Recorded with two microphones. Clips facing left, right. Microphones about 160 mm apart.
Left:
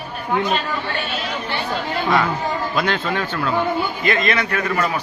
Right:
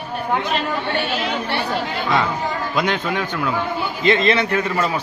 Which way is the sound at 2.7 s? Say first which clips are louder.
Right 2 dB; 15° right (ahead or behind).